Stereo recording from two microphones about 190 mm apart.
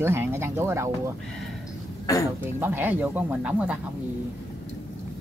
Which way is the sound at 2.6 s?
10° right (ahead or behind).